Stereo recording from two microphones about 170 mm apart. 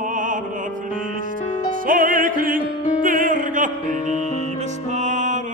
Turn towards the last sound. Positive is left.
turn(degrees=-45)  # may be behind; listen again after turning